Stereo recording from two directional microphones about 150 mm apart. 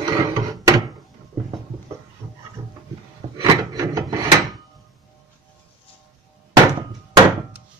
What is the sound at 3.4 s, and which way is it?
Wood, 25° right (ahead or behind).